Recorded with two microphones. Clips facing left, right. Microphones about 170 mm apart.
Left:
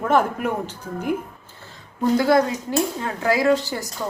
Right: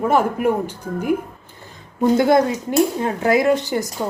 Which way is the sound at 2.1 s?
20° right (ahead or behind).